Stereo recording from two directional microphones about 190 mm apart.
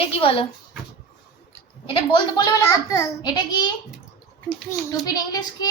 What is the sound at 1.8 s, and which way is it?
A child's voice, 25° left (ahead or behind).